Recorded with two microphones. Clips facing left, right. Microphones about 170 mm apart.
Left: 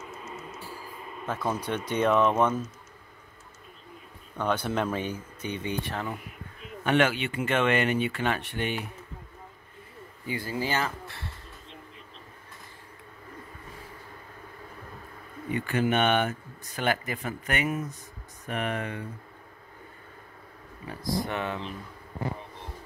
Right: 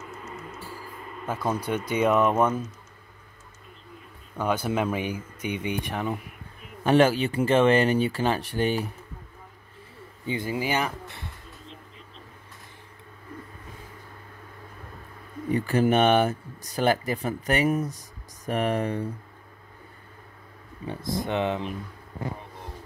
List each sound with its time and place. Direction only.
1.2 s speech: 10° right (ahead or behind)
4.4 s speech: 10° right (ahead or behind)
6.8 s speech: 35° right (ahead or behind)
10.2 s speech: 20° right (ahead or behind)
15.5 s speech: 40° right (ahead or behind)
20.8 s speech: 25° right (ahead or behind)